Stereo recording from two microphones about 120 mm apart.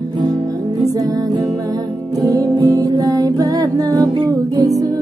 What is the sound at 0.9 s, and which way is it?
Music, 30° right (ahead or behind).